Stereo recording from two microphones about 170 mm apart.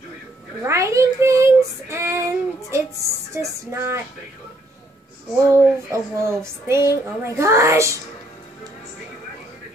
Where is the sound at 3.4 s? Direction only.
15° right (ahead or behind).